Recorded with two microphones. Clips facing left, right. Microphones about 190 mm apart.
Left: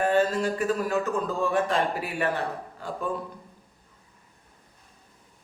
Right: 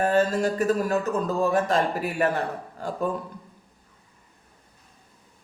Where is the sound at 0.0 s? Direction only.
40° right (ahead or behind).